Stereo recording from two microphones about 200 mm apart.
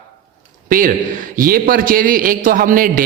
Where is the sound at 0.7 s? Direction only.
40° right (ahead or behind).